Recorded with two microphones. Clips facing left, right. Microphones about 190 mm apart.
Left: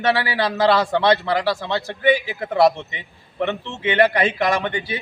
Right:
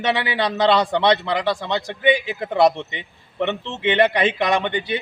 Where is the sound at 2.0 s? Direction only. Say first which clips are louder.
Left 1 dB; 20° right (ahead or behind).